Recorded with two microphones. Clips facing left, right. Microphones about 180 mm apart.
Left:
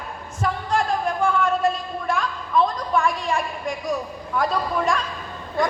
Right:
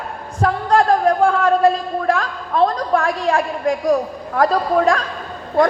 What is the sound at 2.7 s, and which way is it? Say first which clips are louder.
A woman's voice: right 4 dB; 75° right (ahead or behind).